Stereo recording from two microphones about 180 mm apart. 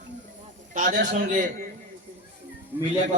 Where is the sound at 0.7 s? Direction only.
50° right (ahead or behind).